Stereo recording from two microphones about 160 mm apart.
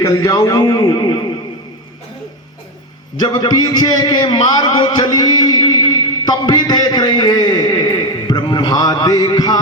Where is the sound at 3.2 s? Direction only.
25° left (ahead or behind).